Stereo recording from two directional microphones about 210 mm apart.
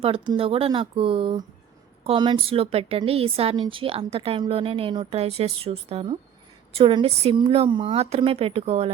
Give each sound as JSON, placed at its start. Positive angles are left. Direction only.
{"t": 0.0, "sound": "a woman's voice", "side_deg": -25}